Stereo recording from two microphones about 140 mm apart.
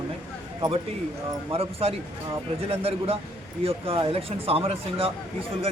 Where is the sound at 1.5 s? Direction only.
45° right (ahead or behind).